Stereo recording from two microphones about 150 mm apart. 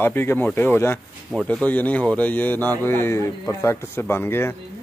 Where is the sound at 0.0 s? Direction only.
15° left (ahead or behind).